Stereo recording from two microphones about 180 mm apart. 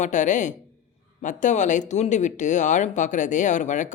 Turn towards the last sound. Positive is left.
turn(degrees=45)  # may be behind; listen again after turning